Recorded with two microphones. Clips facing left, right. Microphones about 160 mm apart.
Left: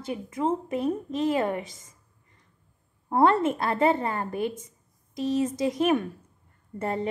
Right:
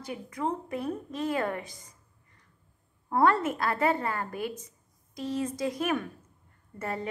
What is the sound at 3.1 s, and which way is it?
A woman's voice, 25° left (ahead or behind).